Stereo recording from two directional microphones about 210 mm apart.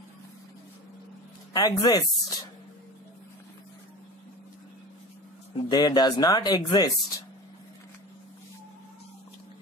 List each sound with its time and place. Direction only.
1.5 s speech: 20° left (ahead or behind)
5.7 s speech: 20° left (ahead or behind)